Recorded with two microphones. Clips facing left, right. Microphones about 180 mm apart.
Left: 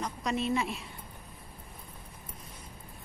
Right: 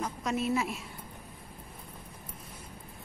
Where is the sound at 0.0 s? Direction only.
5° right (ahead or behind).